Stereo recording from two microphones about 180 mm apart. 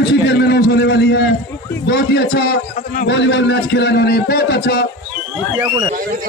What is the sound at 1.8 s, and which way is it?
A man's voice, 70° left (ahead or behind).